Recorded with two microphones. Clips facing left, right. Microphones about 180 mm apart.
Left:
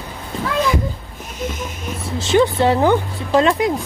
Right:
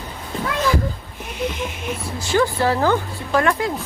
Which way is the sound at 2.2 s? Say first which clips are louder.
Left 4 dB; 20° left (ahead or behind).